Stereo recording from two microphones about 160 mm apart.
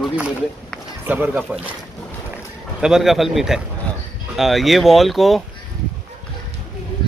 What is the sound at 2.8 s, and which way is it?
Speech, centre (ahead or behind).